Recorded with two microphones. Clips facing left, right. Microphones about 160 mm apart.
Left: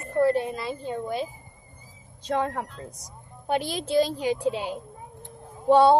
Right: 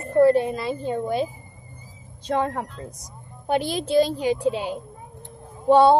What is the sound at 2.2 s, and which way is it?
Speech, 30° right (ahead or behind).